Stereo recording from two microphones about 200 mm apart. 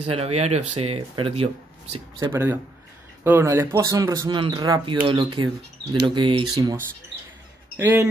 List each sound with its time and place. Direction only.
0.0 s speech: 30° right (ahead or behind)
3.3 s speech: 10° right (ahead or behind)